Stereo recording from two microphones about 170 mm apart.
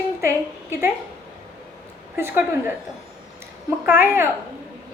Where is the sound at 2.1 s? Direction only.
15° right (ahead or behind).